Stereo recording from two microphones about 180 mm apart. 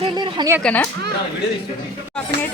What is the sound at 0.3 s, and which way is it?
Speech, 15° right (ahead or behind).